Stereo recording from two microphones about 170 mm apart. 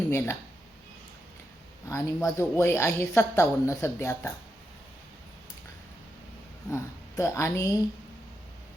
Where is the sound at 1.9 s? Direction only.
15° left (ahead or behind).